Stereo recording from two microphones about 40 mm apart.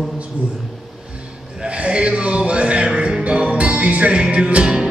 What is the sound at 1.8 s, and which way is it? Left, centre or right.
Music, right.